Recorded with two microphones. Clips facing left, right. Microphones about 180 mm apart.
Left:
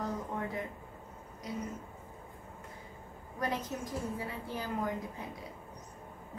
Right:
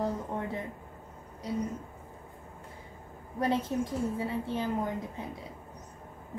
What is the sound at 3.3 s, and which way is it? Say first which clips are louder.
A woman's voice: right 7 dB; 30° right (ahead or behind).